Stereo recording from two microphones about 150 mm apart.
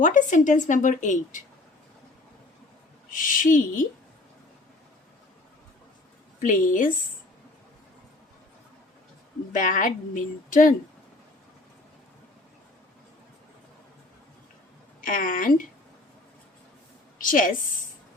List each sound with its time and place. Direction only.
0.0 s a woman's voice: 60° left (ahead or behind)
3.1 s a woman's voice: 65° left (ahead or behind)
6.4 s a woman's voice: 60° left (ahead or behind)
9.5 s a woman's voice: 60° left (ahead or behind)
15.0 s a woman's voice: 65° left (ahead or behind)
17.2 s a woman's voice: 65° left (ahead or behind)